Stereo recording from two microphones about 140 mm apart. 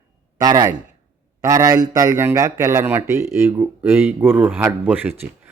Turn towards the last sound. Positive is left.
turn(degrees=-10)  # may be behind; listen again after turning